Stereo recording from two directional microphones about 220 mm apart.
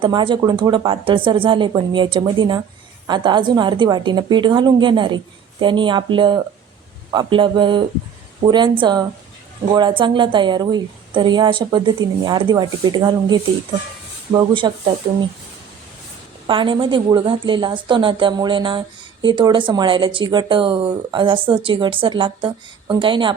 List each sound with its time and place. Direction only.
0.0 s speech: 20° right (ahead or behind)
16.5 s speech: 20° right (ahead or behind)